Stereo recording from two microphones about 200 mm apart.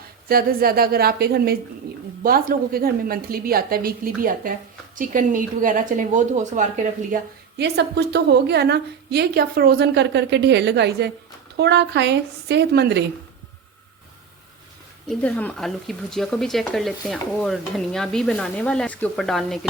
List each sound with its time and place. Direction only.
0.3 s a woman's voice: 50° right (ahead or behind)
7.6 s a woman's voice: 55° right (ahead or behind)
15.1 s speech: 5° left (ahead or behind)